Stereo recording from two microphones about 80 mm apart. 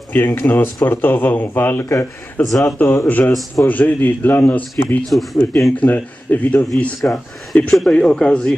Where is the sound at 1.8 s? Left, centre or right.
Left.